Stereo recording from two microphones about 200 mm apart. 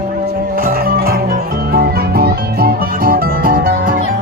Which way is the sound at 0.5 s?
45° right (ahead or behind).